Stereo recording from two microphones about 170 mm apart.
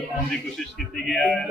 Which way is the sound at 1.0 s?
Centre (ahead or behind).